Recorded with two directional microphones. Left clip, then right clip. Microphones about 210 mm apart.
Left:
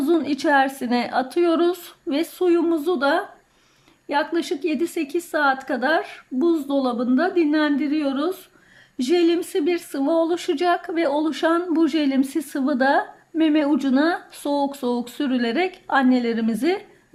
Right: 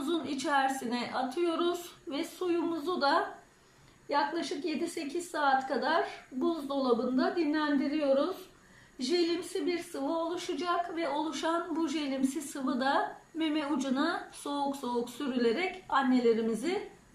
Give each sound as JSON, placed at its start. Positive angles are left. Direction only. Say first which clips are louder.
{"t": 0.0, "sound": "speech", "louder": "left 13 dB", "side_deg": 40}